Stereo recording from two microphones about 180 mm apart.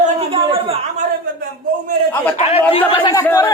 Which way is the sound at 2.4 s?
30° left (ahead or behind).